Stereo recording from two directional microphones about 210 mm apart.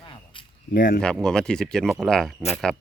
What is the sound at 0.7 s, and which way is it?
Speech, 40° left (ahead or behind).